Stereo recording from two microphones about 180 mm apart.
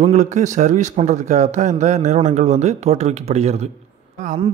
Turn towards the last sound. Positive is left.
turn(degrees=-45)  # may be behind; listen again after turning